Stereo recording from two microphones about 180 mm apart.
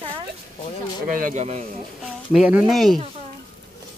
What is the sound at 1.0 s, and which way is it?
Speech, 50° right (ahead or behind).